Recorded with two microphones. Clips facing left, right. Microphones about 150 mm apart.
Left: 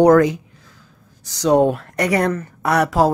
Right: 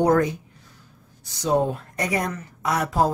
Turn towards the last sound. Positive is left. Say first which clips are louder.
# left 6 dB
turn(degrees=80)